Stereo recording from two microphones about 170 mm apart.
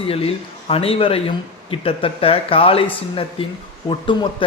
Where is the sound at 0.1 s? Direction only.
35° left (ahead or behind).